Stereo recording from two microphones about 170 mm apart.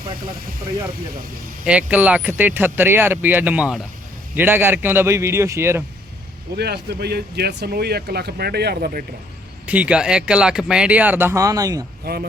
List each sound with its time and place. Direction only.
1.6 s speech: 5° right (ahead or behind)
6.6 s speech: 70° right (ahead or behind)
9.6 s speech: 10° right (ahead or behind)